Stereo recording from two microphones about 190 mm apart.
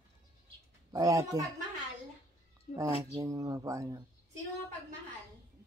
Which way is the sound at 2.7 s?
35° left (ahead or behind).